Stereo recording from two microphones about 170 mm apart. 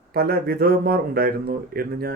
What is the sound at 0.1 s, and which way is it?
Speech, 65° right (ahead or behind).